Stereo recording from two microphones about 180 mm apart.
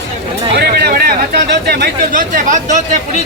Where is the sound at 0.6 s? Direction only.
65° right (ahead or behind).